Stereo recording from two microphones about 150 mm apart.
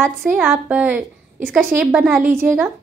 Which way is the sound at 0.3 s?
5° right (ahead or behind).